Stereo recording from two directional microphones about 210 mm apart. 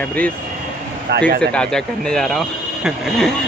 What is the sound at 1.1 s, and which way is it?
Speech, 50° right (ahead or behind).